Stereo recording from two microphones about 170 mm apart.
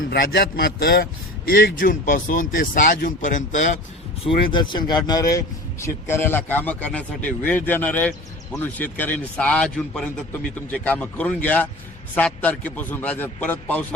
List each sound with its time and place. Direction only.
0.1 s speech: 70° left (ahead or behind); by 3.8 s 45° left (ahead or behind)
4.3 s a man's voice: 30° left (ahead or behind); by 13.8 s 10° left (ahead or behind)